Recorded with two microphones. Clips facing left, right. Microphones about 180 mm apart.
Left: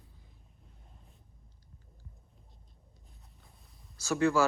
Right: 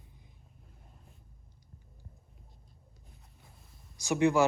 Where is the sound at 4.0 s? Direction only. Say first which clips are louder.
Right 1 dB; 15° right (ahead or behind).